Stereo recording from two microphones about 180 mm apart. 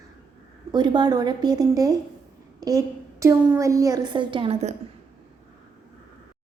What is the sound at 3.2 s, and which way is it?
A woman's voice, 15° right (ahead or behind).